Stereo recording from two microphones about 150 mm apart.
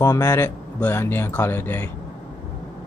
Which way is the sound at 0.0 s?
20° left (ahead or behind).